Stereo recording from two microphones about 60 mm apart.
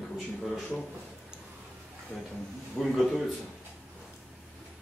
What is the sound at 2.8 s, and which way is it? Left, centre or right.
Speech, centre.